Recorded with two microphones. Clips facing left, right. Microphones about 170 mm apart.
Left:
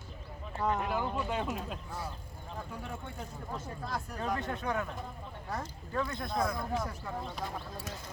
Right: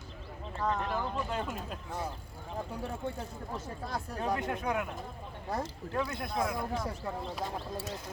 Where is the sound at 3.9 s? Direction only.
20° right (ahead or behind).